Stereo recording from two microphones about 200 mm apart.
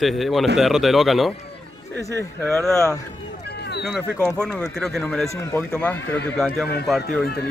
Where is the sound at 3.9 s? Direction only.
5° left (ahead or behind).